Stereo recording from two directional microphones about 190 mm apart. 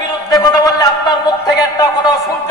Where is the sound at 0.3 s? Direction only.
20° left (ahead or behind).